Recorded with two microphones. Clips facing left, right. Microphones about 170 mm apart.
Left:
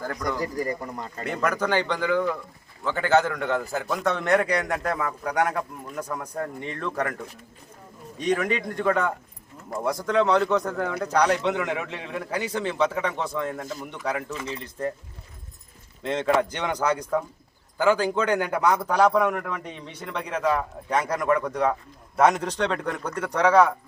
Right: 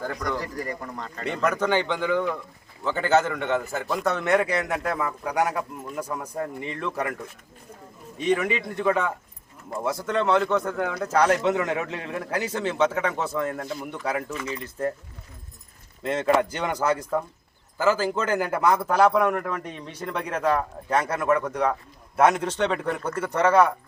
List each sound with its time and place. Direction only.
0.0 s speech: centre (ahead or behind)
0.3 s speech: 20° left (ahead or behind)
1.2 s speech: 5° left (ahead or behind)
2.8 s speech: centre (ahead or behind)
8.2 s speech: 5° right (ahead or behind)
14.3 s speech: 30° left (ahead or behind)
14.6 s speech: 5° right (ahead or behind)
16.0 s speech: 5° right (ahead or behind)
20.1 s a man's voice: 5° right (ahead or behind)